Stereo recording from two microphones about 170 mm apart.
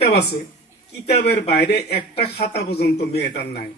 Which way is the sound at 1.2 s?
75° left (ahead or behind).